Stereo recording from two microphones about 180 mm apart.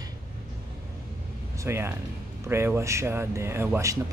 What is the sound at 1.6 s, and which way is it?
Speech, 15° right (ahead or behind).